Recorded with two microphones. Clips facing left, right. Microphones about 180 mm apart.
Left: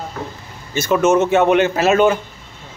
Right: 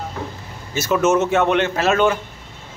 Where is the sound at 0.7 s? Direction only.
Centre (ahead or behind).